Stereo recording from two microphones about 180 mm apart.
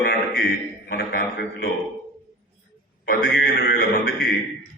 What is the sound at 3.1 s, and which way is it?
A man's voice, 55° left (ahead or behind).